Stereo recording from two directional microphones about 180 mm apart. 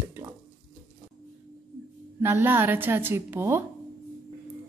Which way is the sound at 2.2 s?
10° right (ahead or behind).